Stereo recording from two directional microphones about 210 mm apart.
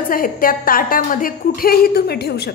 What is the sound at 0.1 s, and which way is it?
A woman's voice, 45° left (ahead or behind).